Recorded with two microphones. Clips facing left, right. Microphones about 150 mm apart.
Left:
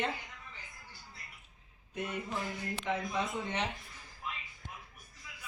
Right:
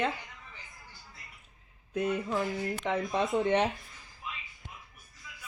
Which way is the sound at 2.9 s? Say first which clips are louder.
Right 3 dB; 80° right.